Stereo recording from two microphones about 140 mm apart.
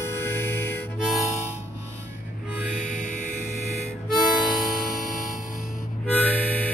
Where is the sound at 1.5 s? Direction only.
55° left (ahead or behind).